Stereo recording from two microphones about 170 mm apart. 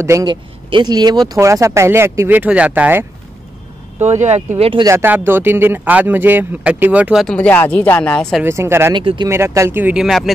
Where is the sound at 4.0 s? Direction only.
40° right (ahead or behind).